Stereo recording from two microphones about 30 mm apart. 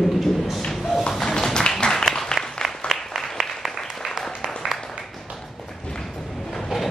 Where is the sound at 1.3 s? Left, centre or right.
Left.